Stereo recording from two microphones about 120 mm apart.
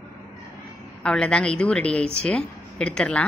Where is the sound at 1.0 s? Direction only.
5° left (ahead or behind).